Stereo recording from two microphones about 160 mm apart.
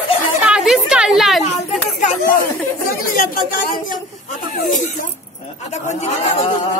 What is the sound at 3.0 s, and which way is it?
Speech, 60° left (ahead or behind).